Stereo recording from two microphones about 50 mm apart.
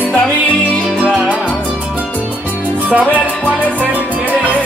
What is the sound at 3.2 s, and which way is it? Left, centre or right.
Music, right.